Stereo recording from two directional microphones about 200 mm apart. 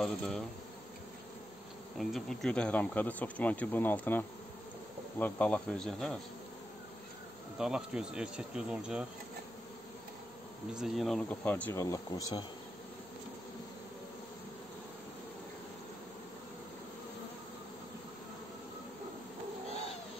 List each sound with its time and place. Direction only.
0.0 s speech: 5° left (ahead or behind)
2.0 s speech: centre (ahead or behind)
7.5 s speech: 5° right (ahead or behind)
10.7 s speech: centre (ahead or behind); by 12.4 s 20° left (ahead or behind)